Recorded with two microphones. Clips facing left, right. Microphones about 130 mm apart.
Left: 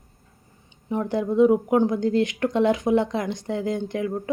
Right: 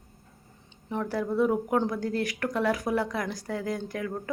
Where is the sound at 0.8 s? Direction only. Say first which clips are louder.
Left 5 dB; 20° left (ahead or behind).